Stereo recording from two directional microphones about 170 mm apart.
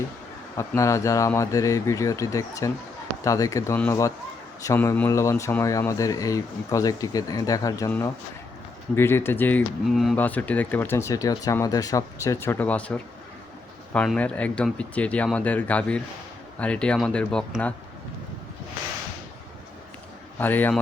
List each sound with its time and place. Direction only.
0.5 s speech: 15° left (ahead or behind)
9.8 s speech: centre (ahead or behind)
10.2 s speech: 10° left (ahead or behind)
20.4 s speech: 10° left (ahead or behind)